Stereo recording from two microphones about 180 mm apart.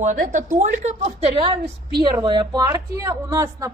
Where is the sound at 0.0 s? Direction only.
45° right (ahead or behind).